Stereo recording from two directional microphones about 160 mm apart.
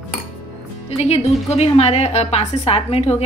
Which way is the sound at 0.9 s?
40° left (ahead or behind).